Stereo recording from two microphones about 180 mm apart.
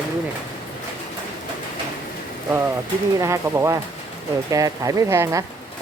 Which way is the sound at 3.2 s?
15° right (ahead or behind).